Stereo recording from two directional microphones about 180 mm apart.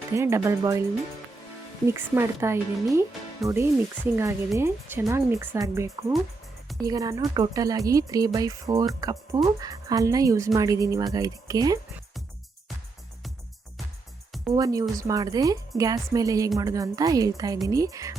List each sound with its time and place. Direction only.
0.1 s speech: 15° right (ahead or behind)
1.9 s a woman's voice: 15° right (ahead or behind)
14.5 s a woman's voice: 20° right (ahead or behind)